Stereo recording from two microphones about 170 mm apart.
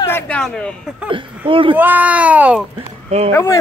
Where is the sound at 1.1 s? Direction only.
30° right (ahead or behind).